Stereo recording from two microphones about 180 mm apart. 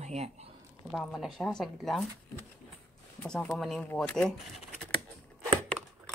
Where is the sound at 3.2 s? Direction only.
5° left (ahead or behind).